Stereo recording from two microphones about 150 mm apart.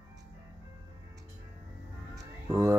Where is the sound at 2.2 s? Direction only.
20° right (ahead or behind).